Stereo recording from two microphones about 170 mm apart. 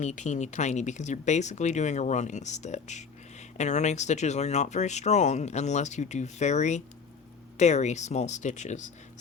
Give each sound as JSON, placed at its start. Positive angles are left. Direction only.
{"t": 0.0, "sound": "speech", "side_deg": 45}